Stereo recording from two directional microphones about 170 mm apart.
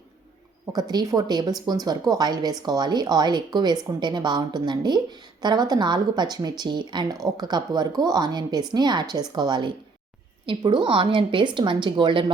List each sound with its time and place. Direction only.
0.7 s speech: 25° right (ahead or behind)